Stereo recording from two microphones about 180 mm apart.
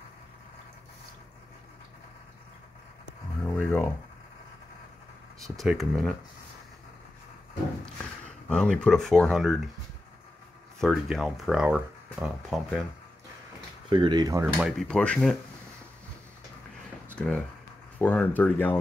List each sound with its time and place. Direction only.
3.4 s a sound: 10° left (ahead or behind)
5.4 s speech: centre (ahead or behind)
8.5 s speech: 5° left (ahead or behind)
10.8 s speech: centre (ahead or behind)
13.8 s speech: 25° right (ahead or behind)
14.4 s speech: 5° right (ahead or behind)
14.9 s speech: 5° left (ahead or behind)
17.1 s speech: 5° left (ahead or behind)